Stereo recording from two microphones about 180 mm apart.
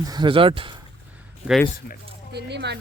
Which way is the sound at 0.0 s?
25° right (ahead or behind).